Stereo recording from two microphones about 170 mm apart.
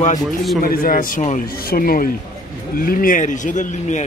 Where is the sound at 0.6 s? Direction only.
55° left (ahead or behind).